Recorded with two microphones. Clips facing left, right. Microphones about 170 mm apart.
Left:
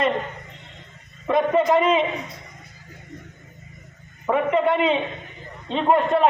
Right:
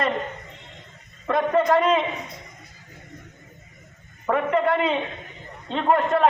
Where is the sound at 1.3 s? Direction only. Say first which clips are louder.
Left 1 dB; 15° left (ahead or behind).